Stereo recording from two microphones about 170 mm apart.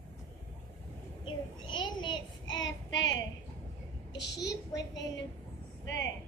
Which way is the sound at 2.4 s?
90° left.